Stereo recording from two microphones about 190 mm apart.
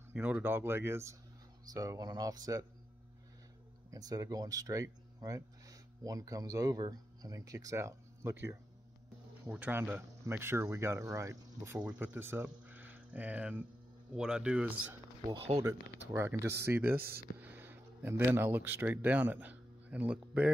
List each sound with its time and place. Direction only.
0.1 s speech: 10° right (ahead or behind)
3.9 s speech: 20° right (ahead or behind)
15.2 s speech: 30° right (ahead or behind)
15.6 s speech: 10° right (ahead or behind)